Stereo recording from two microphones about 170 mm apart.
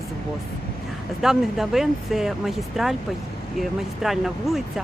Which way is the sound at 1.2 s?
Centre (ahead or behind).